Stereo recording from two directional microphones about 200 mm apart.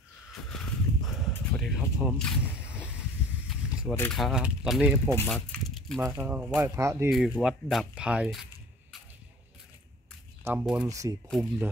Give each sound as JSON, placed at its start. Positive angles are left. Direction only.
{"t": 0.3, "sound": "a sound", "side_deg": 0}
{"t": 3.9, "sound": "speech", "side_deg": 10}
{"t": 4.2, "sound": "speech", "side_deg": 0}
{"t": 5.1, "sound": "speech", "side_deg": 5}
{"t": 7.1, "sound": "speech", "side_deg": 0}
{"t": 10.4, "sound": "speech", "side_deg": -5}
{"t": 10.9, "sound": "speech", "side_deg": -15}